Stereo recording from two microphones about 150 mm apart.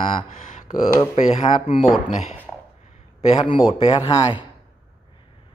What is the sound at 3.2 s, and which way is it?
A man's voice, 45° left (ahead or behind).